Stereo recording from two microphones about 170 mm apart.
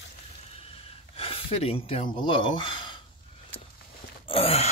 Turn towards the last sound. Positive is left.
turn(degrees=35)  # may be behind; listen again after turning